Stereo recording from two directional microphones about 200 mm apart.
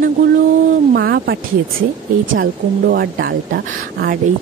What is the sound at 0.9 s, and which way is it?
A woman's voice, 55° right (ahead or behind).